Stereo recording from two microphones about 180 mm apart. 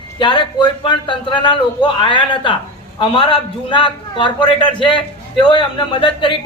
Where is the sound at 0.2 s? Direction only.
25° left (ahead or behind).